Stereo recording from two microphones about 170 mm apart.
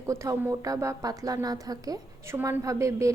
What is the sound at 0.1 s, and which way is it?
A woman's voice, 15° right (ahead or behind).